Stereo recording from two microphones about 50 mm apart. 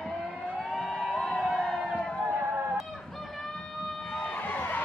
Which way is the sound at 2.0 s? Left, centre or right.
Centre.